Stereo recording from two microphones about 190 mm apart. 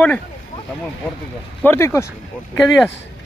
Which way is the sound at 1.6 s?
10° left (ahead or behind).